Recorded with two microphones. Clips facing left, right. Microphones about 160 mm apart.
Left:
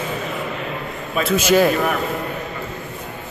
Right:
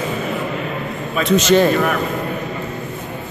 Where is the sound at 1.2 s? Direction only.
5° left (ahead or behind).